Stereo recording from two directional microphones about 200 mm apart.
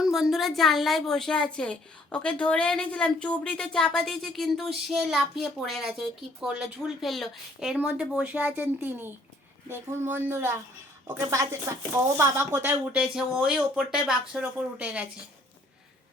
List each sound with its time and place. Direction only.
0.0 s speech: centre (ahead or behind)